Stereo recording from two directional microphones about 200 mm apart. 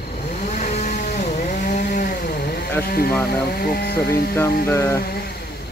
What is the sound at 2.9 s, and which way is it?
Speech, 50° left (ahead or behind).